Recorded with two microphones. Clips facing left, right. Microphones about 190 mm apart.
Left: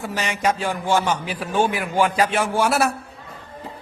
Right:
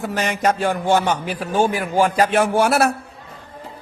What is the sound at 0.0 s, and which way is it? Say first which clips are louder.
A man's voice: right 3 dB; 50° right (ahead or behind).